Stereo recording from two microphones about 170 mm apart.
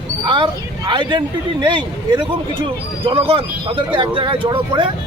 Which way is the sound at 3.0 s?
35° right (ahead or behind).